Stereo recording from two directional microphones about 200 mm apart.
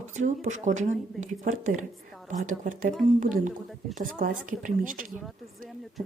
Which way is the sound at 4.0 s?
45° right (ahead or behind).